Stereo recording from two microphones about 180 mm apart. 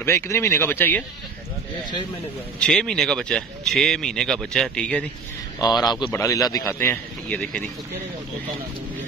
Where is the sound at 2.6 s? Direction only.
5° left (ahead or behind).